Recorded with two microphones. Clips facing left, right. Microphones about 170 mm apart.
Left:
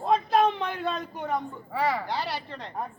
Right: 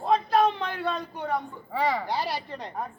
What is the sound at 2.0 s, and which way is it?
Speech, 15° right (ahead or behind).